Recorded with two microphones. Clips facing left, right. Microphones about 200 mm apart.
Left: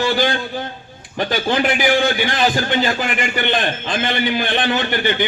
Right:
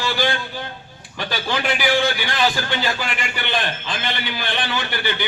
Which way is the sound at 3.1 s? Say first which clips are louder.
Left 6 dB; 50° left (ahead or behind).